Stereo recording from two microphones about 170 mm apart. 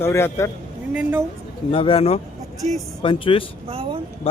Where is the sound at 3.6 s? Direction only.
30° right (ahead or behind).